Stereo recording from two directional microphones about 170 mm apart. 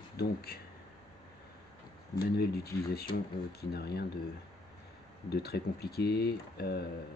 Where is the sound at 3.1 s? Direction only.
70° left (ahead or behind).